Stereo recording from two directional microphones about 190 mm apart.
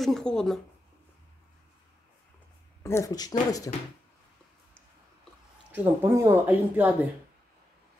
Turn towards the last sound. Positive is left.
turn(degrees=-10)  # may be behind; listen again after turning